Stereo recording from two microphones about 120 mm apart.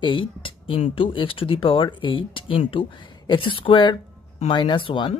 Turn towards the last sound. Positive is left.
turn(degrees=45)  # may be behind; listen again after turning